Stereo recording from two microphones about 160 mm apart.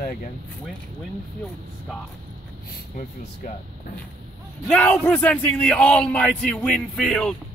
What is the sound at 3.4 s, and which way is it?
Speech, 60° left (ahead or behind).